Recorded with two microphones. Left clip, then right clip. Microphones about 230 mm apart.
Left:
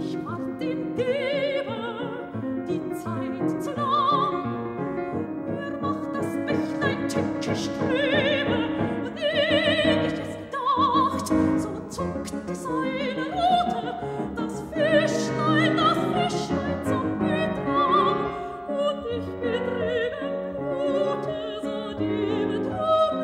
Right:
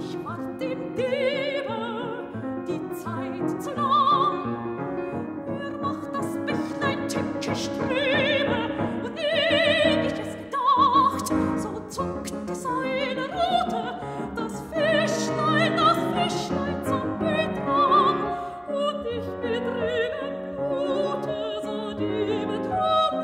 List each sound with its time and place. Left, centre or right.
0.9 s music: right
3.8 s music: right
6.5 s music: right
9.2 s opera: right
10.6 s music: right
12.8 s music: right
14.8 s music: right
17.6 s music: centre
19.4 s music: right
20.7 s opera: right
22.1 s music: right